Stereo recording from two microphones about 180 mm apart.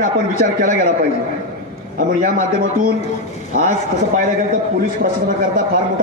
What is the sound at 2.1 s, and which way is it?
Speech, 45° right (ahead or behind).